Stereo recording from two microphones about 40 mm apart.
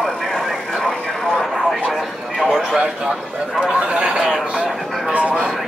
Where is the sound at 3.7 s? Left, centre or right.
Right.